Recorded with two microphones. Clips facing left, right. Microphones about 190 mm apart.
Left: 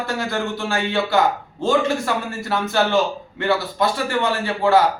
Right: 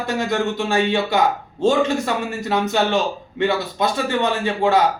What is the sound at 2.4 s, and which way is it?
A man's voice, 20° right (ahead or behind).